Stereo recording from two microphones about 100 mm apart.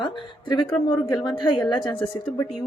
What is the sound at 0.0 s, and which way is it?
A woman's voice, 50° left (ahead or behind).